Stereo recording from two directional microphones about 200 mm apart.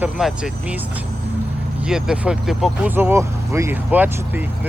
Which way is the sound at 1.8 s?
5° right (ahead or behind).